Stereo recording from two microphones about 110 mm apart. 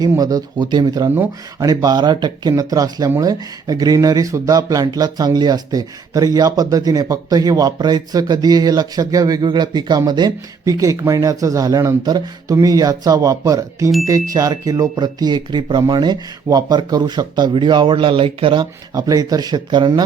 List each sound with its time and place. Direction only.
0.2 s speech: 35° right (ahead or behind); by 18.7 s 50° right (ahead or behind)
18.9 s speech: 35° right (ahead or behind)